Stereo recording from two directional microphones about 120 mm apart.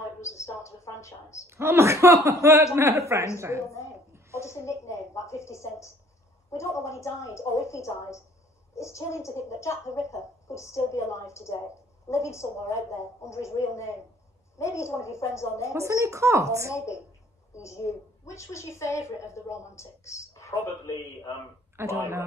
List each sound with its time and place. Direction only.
0.2 s a sound: 25° left (ahead or behind)
1.5 s a woman's voice: 20° right (ahead or behind)
3.6 s a woman's voice: 25° left (ahead or behind)
4.4 s a sound: 25° left (ahead or behind)
6.5 s a woman's voice: 25° left (ahead or behind)
15.7 s a woman's voice: 25° right (ahead or behind)
16.7 s a woman's voice: 25° left (ahead or behind)
21.7 s a woman's voice: 25° right (ahead or behind)